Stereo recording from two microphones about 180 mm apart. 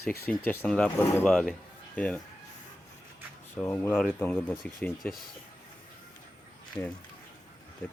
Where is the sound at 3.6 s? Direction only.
10° left (ahead or behind).